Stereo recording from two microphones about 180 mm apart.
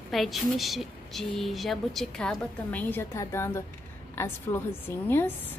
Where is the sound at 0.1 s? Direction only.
Centre (ahead or behind).